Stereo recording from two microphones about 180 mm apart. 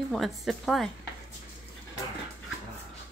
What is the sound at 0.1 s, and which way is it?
Speech, centre (ahead or behind).